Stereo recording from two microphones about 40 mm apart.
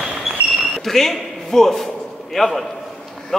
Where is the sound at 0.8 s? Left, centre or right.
Centre.